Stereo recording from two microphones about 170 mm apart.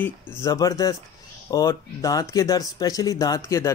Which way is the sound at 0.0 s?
20° left (ahead or behind).